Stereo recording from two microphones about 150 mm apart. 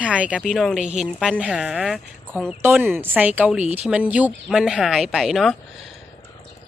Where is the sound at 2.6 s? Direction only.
15° right (ahead or behind).